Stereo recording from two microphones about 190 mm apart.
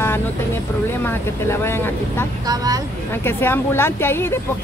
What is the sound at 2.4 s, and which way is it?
Speech, 20° right (ahead or behind).